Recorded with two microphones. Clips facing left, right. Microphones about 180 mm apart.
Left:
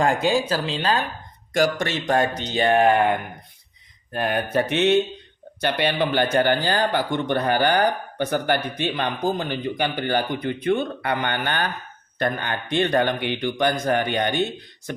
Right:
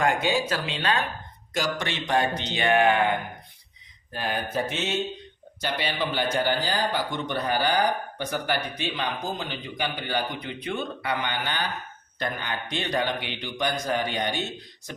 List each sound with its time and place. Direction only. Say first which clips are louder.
0.0 s speech: left 4 dB; 30° left (ahead or behind)
1.5 s speech: left 7 dB; 45° left (ahead or behind)
4.1 s speech: left 6 dB; 55° left (ahead or behind)